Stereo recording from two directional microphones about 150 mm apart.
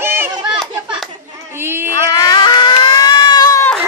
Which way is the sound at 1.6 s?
15° right (ahead or behind).